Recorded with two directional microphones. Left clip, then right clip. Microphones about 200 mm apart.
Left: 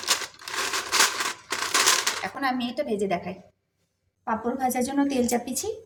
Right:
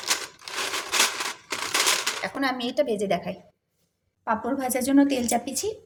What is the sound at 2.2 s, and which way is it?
A woman's voice, 25° right (ahead or behind).